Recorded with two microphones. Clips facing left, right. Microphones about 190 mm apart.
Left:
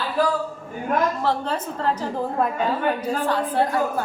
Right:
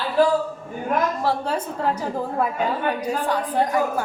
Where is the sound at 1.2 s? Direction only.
10° right (ahead or behind).